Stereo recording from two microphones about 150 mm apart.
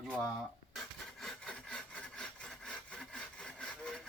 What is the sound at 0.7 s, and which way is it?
Sawing, centre (ahead or behind).